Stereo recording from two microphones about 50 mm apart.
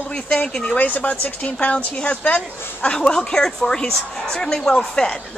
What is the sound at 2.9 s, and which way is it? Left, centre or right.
Speech, centre.